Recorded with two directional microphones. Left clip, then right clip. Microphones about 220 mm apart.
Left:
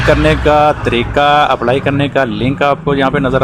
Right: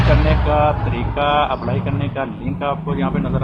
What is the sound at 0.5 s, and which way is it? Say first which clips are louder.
Speech: left 7 dB; 45° left (ahead or behind).